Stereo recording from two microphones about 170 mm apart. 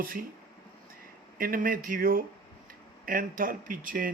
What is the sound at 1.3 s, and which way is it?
Speech, 55° right (ahead or behind).